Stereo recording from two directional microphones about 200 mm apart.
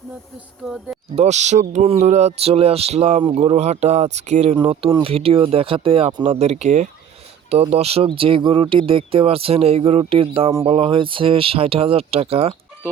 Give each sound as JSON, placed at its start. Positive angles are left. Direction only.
{"t": 0.6, "sound": "speech", "side_deg": -5}
{"t": 1.1, "sound": "speech", "side_deg": -35}